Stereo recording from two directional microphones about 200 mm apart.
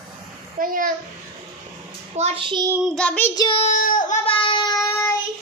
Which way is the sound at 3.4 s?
25° left (ahead or behind).